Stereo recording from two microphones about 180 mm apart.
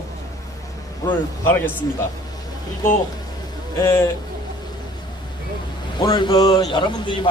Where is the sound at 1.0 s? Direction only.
15° left (ahead or behind).